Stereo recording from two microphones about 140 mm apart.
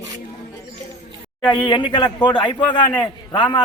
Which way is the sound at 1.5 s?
35° left (ahead or behind).